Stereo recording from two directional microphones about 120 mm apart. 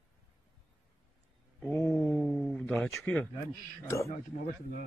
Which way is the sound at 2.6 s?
15° left (ahead or behind).